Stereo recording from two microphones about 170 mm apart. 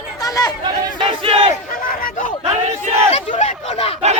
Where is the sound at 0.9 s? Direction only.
30° right (ahead or behind).